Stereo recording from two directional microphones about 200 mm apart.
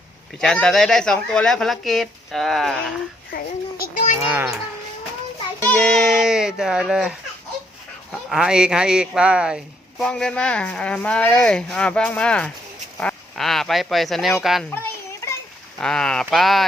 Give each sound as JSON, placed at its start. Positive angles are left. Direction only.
{"t": 0.3, "sound": "speech", "side_deg": 5}
{"t": 3.3, "sound": "a child's voice", "side_deg": 45}
{"t": 4.2, "sound": "a child's voice", "side_deg": -10}
{"t": 5.5, "sound": "speech", "side_deg": 5}
{"t": 8.3, "sound": "speech", "side_deg": -5}
{"t": 14.7, "sound": "children playing", "side_deg": 15}
{"t": 15.8, "sound": "speech", "side_deg": 5}